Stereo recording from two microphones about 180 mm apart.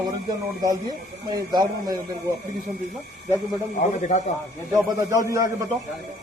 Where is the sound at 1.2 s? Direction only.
20° right (ahead or behind).